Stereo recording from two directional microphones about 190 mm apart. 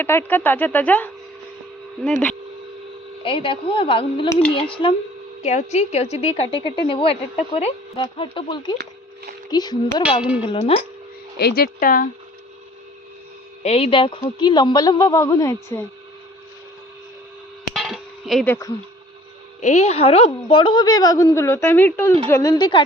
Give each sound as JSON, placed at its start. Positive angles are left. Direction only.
{"t": 0.0, "sound": "speech", "side_deg": 10}
{"t": 3.2, "sound": "a woman's voice", "side_deg": 25}
{"t": 11.3, "sound": "speech", "side_deg": 55}
{"t": 13.6, "sound": "a woman's voice", "side_deg": 30}
{"t": 17.7, "sound": "a sound", "side_deg": 0}
{"t": 18.4, "sound": "speech", "side_deg": 10}
{"t": 19.6, "sound": "a woman's voice", "side_deg": 35}